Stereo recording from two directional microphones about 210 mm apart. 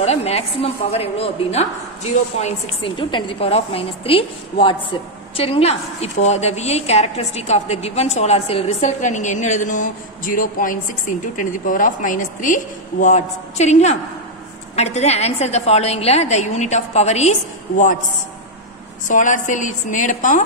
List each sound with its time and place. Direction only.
0.0 s a woman's voice: 30° left (ahead or behind)
19.0 s a woman's voice: 40° left (ahead or behind)